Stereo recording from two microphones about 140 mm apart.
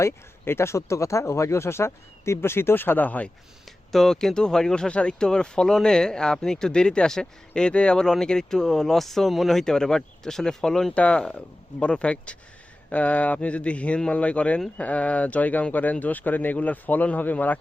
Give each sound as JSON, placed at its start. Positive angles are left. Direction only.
{"t": 0.0, "sound": "speech", "side_deg": 20}